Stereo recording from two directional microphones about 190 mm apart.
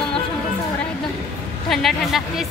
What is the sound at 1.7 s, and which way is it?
Speech, centre (ahead or behind).